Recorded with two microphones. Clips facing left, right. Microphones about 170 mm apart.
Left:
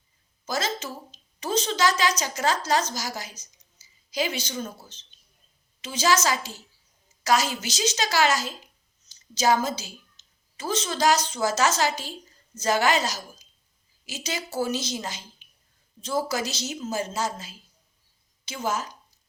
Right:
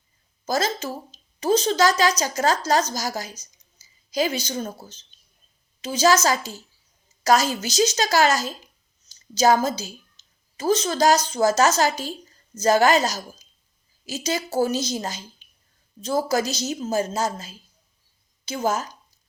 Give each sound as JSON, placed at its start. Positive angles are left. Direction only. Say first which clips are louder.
{"t": 0.4, "sound": "a woman's voice", "louder": "right 5 dB", "side_deg": -40}
{"t": 10.2, "sound": "a sound", "louder": "right 1 dB", "side_deg": -40}
{"t": 10.6, "sound": "a woman's voice", "louder": "right 5 dB", "side_deg": -40}